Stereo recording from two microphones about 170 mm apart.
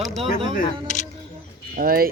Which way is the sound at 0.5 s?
50° left (ahead or behind).